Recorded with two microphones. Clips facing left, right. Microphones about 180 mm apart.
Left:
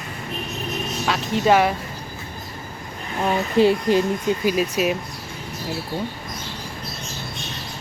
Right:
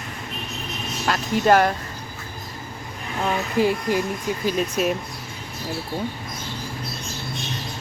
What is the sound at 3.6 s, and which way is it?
Speech, 20° left (ahead or behind).